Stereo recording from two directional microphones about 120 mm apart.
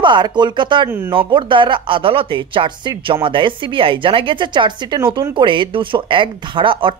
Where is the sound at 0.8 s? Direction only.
20° right (ahead or behind).